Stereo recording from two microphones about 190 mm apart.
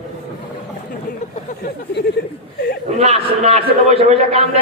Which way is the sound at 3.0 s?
35° right (ahead or behind).